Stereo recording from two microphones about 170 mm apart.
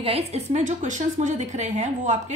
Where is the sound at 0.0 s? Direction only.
35° right (ahead or behind).